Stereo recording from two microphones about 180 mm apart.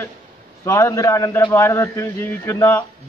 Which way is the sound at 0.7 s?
15° left (ahead or behind).